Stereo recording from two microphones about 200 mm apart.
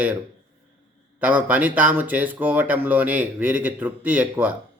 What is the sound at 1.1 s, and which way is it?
Speech, 10° right (ahead or behind).